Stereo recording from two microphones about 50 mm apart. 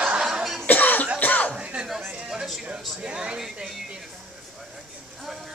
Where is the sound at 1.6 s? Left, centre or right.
Right.